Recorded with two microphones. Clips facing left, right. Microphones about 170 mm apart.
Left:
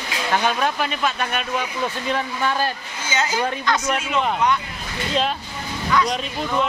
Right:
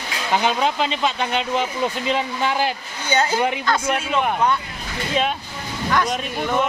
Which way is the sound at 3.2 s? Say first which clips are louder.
Right 3 dB; 30° right (ahead or behind).